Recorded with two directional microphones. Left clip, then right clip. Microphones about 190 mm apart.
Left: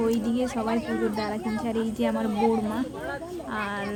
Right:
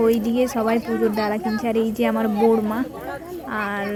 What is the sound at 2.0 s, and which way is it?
Speech, 25° right (ahead or behind).